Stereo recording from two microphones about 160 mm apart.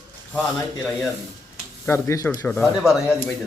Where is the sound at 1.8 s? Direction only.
15° left (ahead or behind).